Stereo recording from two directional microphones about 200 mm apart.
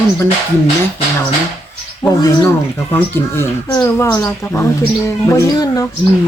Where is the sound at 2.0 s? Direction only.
10° left (ahead or behind).